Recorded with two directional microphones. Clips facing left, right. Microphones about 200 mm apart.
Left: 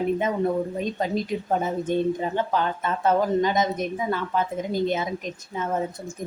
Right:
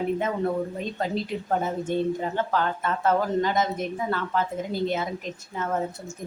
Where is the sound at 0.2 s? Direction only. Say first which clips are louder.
Left 2 dB; 15° left (ahead or behind).